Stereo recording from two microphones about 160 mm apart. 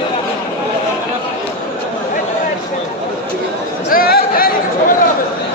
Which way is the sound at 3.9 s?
65° left (ahead or behind).